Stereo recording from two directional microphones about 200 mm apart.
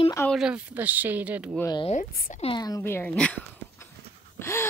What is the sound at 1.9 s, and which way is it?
Speech, 30° left (ahead or behind).